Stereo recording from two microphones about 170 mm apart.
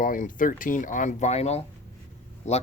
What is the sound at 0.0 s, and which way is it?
Speech, 50° left (ahead or behind).